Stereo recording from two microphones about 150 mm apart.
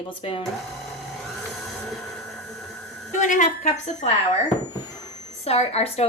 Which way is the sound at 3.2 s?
55° left (ahead or behind).